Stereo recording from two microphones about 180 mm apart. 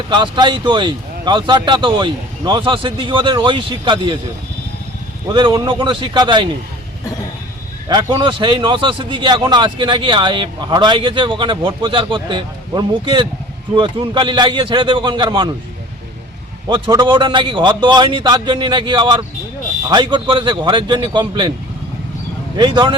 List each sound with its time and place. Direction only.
0.1 s a man's voice: 25° right (ahead or behind)
5.3 s a man's voice: 25° right (ahead or behind)
7.9 s a man's voice: 25° right (ahead or behind)
16.6 s a man's voice: 25° right (ahead or behind)
22.5 s a man's voice: 25° right (ahead or behind)